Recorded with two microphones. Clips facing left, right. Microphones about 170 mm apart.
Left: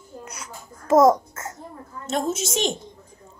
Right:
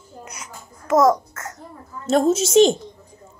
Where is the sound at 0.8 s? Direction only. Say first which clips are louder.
Left 1 dB; 25° left (ahead or behind).